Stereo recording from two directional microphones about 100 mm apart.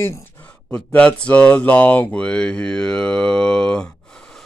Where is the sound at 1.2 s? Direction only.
15° left (ahead or behind).